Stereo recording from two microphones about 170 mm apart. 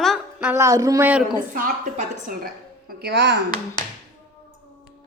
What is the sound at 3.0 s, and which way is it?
Speech, 75° right (ahead or behind).